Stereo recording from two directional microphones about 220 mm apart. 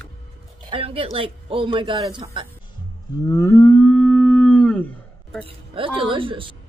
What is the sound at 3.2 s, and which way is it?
Livestock, 15° left (ahead or behind).